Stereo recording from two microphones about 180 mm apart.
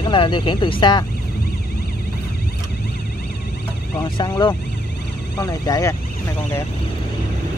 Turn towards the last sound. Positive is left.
turn(degrees=15)  # may be behind; listen again after turning